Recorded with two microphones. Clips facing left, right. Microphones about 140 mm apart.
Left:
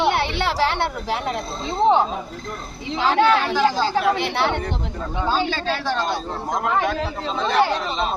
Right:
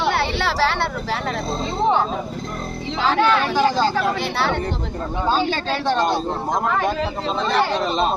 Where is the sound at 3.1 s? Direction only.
20° left (ahead or behind).